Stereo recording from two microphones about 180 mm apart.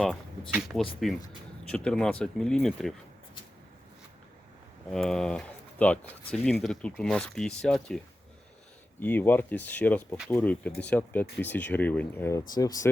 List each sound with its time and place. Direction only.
0.0 s speech: 5° left (ahead or behind)
4.9 s speech: 5° left (ahead or behind)
9.0 s speech: 10° left (ahead or behind)